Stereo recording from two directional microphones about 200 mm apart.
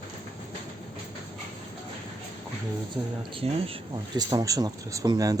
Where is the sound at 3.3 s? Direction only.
30° right (ahead or behind).